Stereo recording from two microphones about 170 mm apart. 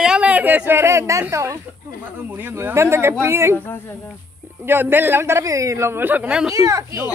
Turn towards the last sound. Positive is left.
turn(degrees=-20)  # may be behind; listen again after turning